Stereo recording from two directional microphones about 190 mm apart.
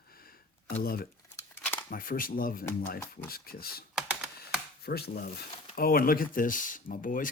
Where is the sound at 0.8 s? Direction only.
50° left (ahead or behind).